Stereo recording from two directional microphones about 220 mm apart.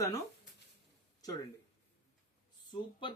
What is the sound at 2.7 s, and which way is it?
Speech, 20° left (ahead or behind).